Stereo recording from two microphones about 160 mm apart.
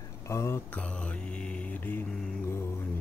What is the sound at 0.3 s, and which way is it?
Mantra, 15° left (ahead or behind).